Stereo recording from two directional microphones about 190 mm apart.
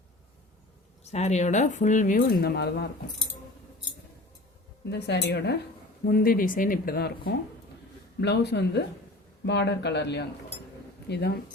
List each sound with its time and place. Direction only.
1.0 s speech: 35° left (ahead or behind); by 2.9 s 60° left (ahead or behind)
4.9 s speech: 65° left (ahead or behind)
6.1 s speech: 50° left (ahead or behind)